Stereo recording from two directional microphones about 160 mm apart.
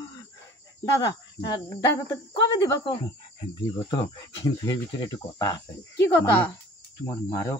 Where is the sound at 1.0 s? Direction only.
25° left (ahead or behind).